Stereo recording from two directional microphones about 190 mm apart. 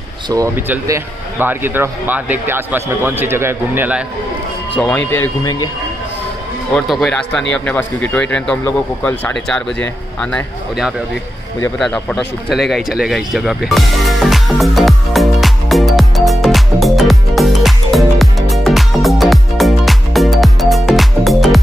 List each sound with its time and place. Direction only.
0.3 s speech: 15° right (ahead or behind)
4.7 s speech: 5° left (ahead or behind)
5.2 s speech: 20° left (ahead or behind)
6.7 s speech: 5° left (ahead or behind)
11.8 s a sound: 5° left (ahead or behind)